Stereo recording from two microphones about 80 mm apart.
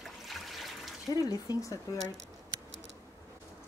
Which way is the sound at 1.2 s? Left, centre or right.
Left.